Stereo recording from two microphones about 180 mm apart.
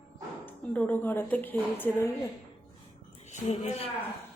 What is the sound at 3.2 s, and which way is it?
Speech, 35° left (ahead or behind).